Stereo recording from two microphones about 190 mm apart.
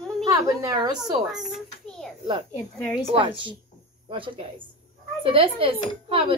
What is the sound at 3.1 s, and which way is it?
A woman's voice, 25° right (ahead or behind).